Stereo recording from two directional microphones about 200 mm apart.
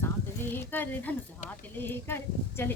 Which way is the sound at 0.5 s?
10° left (ahead or behind).